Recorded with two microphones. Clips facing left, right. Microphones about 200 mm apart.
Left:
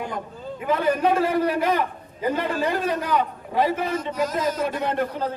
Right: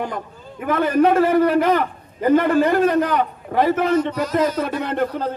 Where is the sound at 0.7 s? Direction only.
65° right (ahead or behind).